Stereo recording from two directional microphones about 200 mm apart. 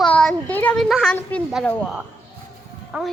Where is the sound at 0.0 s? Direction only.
5° left (ahead or behind).